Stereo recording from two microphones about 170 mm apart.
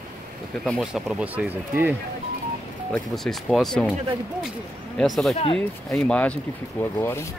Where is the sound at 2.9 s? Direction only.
5° left (ahead or behind).